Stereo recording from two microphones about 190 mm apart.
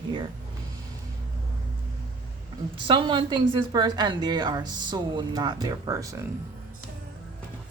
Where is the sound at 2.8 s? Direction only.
25° right (ahead or behind).